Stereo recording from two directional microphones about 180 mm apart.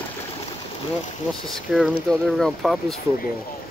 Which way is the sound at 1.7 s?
Centre (ahead or behind).